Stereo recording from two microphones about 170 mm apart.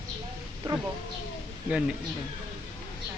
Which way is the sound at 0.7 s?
30° right (ahead or behind).